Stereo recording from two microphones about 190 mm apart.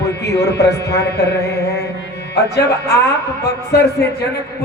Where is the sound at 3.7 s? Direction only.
60° left (ahead or behind).